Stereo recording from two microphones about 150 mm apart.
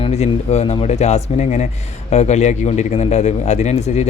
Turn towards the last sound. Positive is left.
turn(degrees=50)  # may be behind; listen again after turning